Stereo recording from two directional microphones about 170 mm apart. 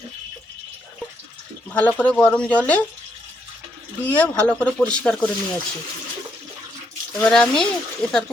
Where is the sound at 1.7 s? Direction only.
10° left (ahead or behind).